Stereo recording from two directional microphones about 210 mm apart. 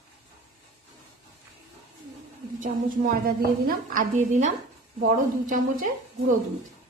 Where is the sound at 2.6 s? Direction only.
40° right (ahead or behind).